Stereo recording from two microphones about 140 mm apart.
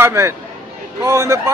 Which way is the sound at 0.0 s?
20° right (ahead or behind).